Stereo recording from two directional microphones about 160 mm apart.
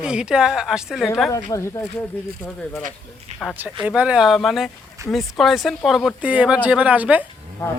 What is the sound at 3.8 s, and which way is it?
A woman's voice, 10° right (ahead or behind).